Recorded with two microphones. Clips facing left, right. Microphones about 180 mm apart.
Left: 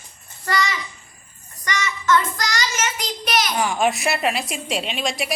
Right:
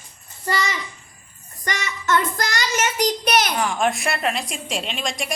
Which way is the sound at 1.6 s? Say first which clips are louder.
Left 3 dB; 55° right (ahead or behind).